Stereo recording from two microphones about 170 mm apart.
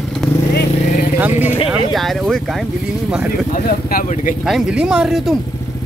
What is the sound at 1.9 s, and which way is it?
Speech, centre (ahead or behind).